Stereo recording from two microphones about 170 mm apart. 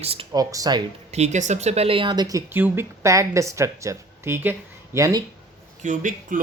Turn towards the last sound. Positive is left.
turn(degrees=-50)  # may be behind; listen again after turning